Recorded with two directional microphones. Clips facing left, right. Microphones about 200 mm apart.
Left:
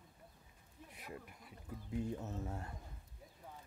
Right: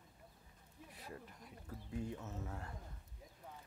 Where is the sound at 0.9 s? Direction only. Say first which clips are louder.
Left 2 dB; 15° left (ahead or behind).